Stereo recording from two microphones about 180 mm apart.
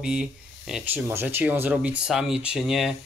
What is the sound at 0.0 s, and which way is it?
Speech, 5° right (ahead or behind).